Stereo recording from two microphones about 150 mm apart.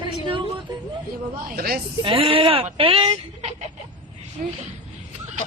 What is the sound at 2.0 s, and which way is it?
Speech, 40° right (ahead or behind).